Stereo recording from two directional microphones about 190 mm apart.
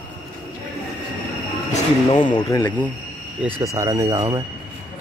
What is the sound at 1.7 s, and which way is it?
Speech, 25° left (ahead or behind).